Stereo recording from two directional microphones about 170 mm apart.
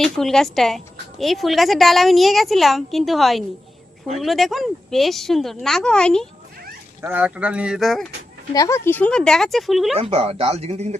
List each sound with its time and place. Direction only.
0.0 s a woman's voice: centre (ahead or behind)
7.0 s speech: 10° right (ahead or behind)
8.5 s a woman's voice: 15° left (ahead or behind); by 9.9 s centre (ahead or behind)
9.9 s speech: 35° right (ahead or behind)